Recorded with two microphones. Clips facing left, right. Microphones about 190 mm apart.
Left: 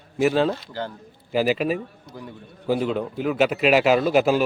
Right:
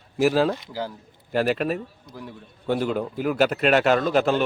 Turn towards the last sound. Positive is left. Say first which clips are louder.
# left 2 dB
turn(degrees=5)  # may be behind; listen again after turning